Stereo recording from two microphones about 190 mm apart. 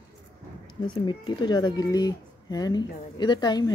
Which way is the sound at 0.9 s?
25° left (ahead or behind).